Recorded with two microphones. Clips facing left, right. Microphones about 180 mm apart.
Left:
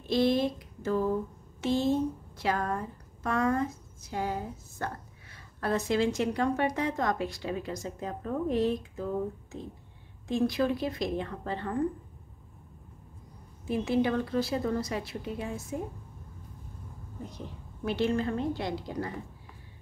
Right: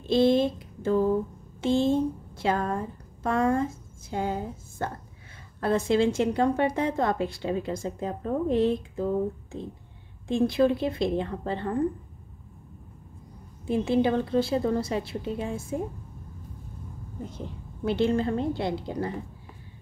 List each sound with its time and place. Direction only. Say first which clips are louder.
0.0 s a woman's voice: right 4 dB; 25° right (ahead or behind)
10.2 s a woman's voice: right 5 dB; 25° right (ahead or behind)
13.7 s a woman's voice: right 4 dB; 25° right (ahead or behind)
17.8 s a woman's voice: right 4 dB; 30° right (ahead or behind)